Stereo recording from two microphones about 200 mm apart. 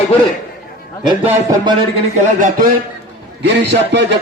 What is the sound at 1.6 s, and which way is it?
Speech, 35° right (ahead or behind).